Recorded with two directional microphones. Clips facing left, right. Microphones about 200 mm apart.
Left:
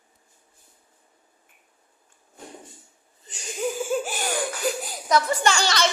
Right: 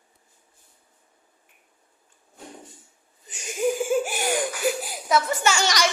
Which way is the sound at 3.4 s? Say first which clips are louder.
Right 4 dB; 10° right (ahead or behind).